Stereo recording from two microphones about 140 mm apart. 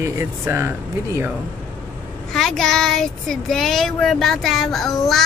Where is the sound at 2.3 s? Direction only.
5° left (ahead or behind).